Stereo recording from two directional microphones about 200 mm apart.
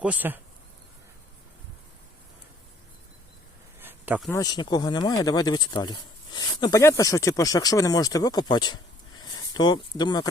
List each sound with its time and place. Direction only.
0.0 s speech: 10° right (ahead or behind)
3.8 s a sound: 10° right (ahead or behind)
4.3 s speech: 20° left (ahead or behind)